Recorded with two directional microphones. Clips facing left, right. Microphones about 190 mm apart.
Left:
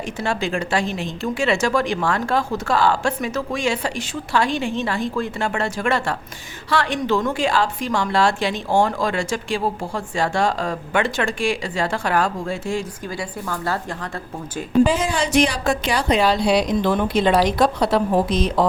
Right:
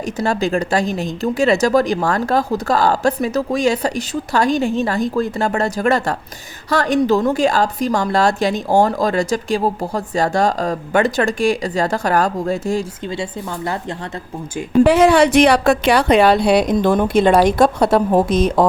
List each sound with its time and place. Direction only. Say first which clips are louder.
0.2 s a woman's voice: right 5 dB; 40° right (ahead or behind)
13.1 s speech: right 2 dB; 20° right (ahead or behind)
14.8 s a woman's voice: right 10 dB; 65° right (ahead or behind)
16.7 s a woman's voice: right 5 dB; 45° right (ahead or behind)